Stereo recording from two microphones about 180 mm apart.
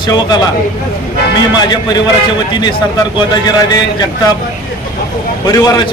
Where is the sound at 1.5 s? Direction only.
20° left (ahead or behind).